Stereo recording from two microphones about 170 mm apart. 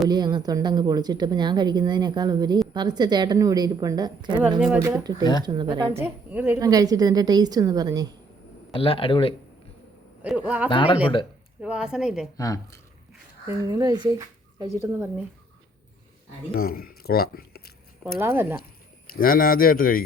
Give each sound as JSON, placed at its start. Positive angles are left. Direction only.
{"t": 0.1, "sound": "speech", "side_deg": -25}
{"t": 6.0, "sound": "a woman's voice", "side_deg": -10}
{"t": 6.6, "sound": "speech", "side_deg": -20}
{"t": 8.7, "sound": "a man's voice", "side_deg": 35}
{"t": 10.2, "sound": "a woman's voice", "side_deg": -5}
{"t": 10.7, "sound": "speech", "side_deg": 30}
{"t": 11.6, "sound": "speech", "side_deg": -5}
{"t": 13.5, "sound": "speech", "side_deg": -20}
{"t": 14.8, "sound": "a woman's voice", "side_deg": -10}
{"t": 16.6, "sound": "speech", "side_deg": 60}
{"t": 18.2, "sound": "a woman's voice", "side_deg": -15}
{"t": 19.1, "sound": "speech", "side_deg": 60}